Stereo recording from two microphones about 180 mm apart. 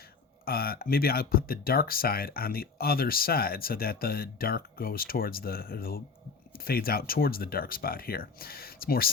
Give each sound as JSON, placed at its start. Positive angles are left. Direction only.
{"t": 0.4, "sound": "speech", "side_deg": 55}